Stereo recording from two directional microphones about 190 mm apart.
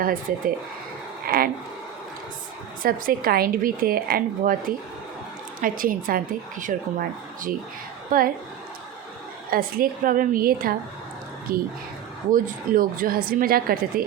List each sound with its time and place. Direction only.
0.0 s a woman's voice: 45° right (ahead or behind)
2.8 s a woman's voice: 50° right (ahead or behind)
9.5 s a woman's voice: 50° right (ahead or behind)